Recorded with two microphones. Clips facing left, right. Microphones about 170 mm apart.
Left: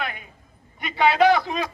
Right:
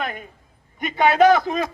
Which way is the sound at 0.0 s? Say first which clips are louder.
Right 3 dB; 45° right (ahead or behind).